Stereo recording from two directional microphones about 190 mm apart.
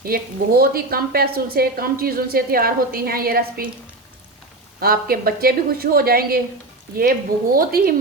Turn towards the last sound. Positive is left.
turn(degrees=-50)  # may be behind; listen again after turning